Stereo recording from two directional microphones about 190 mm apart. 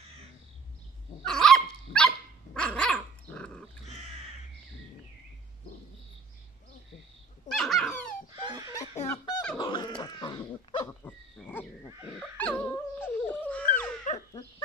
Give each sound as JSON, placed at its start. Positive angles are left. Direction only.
{"t": 1.2, "sound": "dog", "side_deg": 5}
{"t": 7.4, "sound": "dog", "side_deg": 0}
{"t": 8.5, "sound": "a sound", "side_deg": -20}
{"t": 9.1, "sound": "a sound", "side_deg": 20}
{"t": 9.6, "sound": "dog", "side_deg": 25}
{"t": 11.1, "sound": "dog", "side_deg": 10}
{"t": 14.1, "sound": "dog", "side_deg": 40}